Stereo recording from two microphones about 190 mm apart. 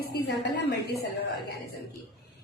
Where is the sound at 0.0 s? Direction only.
60° left (ahead or behind).